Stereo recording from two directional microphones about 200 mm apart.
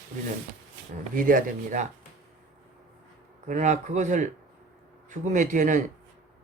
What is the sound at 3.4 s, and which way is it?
Speech, 35° right (ahead or behind).